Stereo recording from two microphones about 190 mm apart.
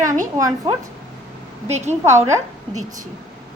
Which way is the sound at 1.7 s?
35° right (ahead or behind).